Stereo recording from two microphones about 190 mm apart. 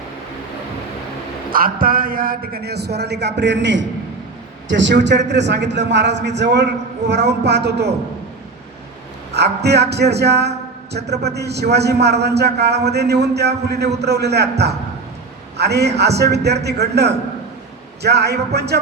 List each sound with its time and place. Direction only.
1.5 s a man's voice: 50° right (ahead or behind)
9.6 s a man's voice: 60° right (ahead or behind)
15.5 s a man's voice: 60° right (ahead or behind)